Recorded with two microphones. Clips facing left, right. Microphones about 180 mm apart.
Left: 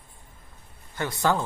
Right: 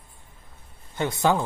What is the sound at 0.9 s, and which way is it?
Speech, 20° right (ahead or behind).